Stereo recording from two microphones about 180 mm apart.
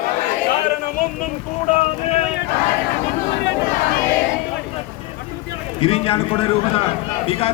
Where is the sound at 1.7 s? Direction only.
35° left (ahead or behind).